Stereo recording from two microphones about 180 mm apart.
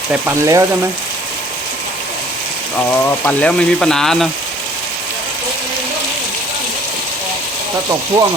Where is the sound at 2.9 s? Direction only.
10° left (ahead or behind).